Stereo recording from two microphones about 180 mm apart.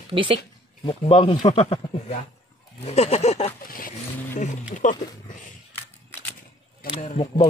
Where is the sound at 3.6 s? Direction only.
50° left (ahead or behind).